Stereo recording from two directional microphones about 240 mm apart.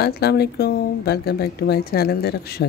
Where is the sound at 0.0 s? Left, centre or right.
Left.